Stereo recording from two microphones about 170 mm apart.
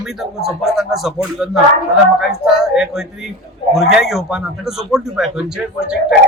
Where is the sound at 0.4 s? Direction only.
Centre (ahead or behind).